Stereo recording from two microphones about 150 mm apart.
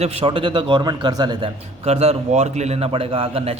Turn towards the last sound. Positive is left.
turn(degrees=-40)  # may be behind; listen again after turning